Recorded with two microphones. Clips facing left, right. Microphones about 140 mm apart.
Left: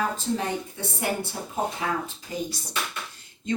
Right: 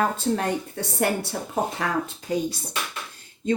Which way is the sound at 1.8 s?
75° right (ahead or behind).